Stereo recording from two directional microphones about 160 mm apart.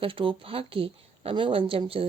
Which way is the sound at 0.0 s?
30° right (ahead or behind).